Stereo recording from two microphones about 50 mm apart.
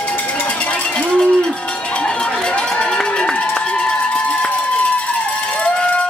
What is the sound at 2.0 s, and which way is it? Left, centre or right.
Run, centre.